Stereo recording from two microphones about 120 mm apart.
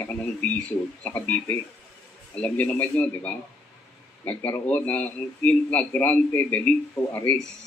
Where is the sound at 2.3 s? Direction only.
10° left (ahead or behind).